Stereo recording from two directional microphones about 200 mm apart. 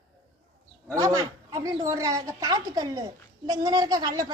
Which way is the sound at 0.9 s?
15° right (ahead or behind).